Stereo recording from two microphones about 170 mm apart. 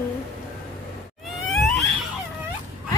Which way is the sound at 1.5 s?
Centre (ahead or behind).